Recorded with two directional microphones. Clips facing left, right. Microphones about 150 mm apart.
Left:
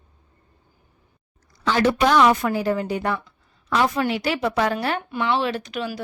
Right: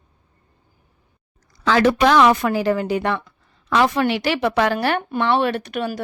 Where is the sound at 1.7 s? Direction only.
90° right; by 6.0 s 55° right (ahead or behind).